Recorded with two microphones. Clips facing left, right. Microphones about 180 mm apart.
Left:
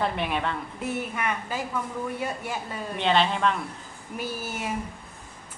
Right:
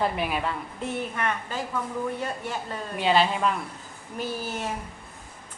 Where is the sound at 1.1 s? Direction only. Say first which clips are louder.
Even; 10° left (ahead or behind).